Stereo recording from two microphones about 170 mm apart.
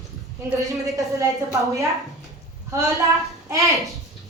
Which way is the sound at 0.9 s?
20° right (ahead or behind).